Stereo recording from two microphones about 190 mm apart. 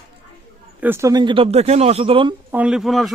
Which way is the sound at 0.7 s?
10° right (ahead or behind).